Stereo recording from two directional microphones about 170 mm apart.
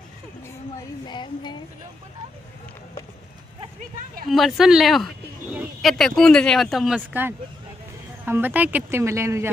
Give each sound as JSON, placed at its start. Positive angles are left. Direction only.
{"t": 1.0, "sound": "a sound", "side_deg": 25}
{"t": 4.3, "sound": "speech", "side_deg": 0}
{"t": 7.0, "sound": "speech", "side_deg": -10}